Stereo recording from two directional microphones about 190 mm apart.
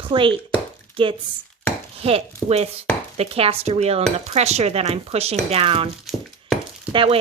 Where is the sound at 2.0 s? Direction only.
30° right (ahead or behind).